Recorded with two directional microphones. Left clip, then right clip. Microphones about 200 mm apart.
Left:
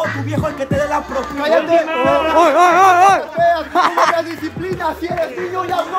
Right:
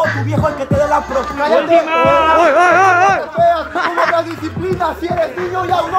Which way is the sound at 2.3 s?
25° left (ahead or behind).